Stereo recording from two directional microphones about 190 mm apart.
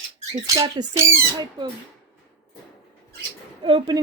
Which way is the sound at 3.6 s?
25° right (ahead or behind).